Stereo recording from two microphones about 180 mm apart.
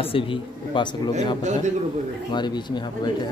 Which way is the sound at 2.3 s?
25° left (ahead or behind).